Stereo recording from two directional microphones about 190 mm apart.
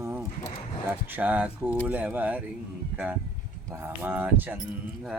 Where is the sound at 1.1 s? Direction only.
10° right (ahead or behind).